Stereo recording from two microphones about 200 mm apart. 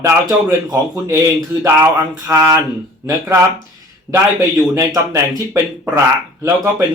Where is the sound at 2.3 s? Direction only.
15° right (ahead or behind).